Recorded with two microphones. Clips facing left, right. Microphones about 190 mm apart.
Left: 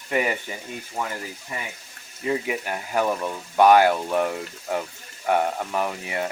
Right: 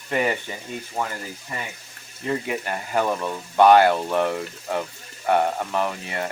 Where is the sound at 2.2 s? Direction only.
10° left (ahead or behind).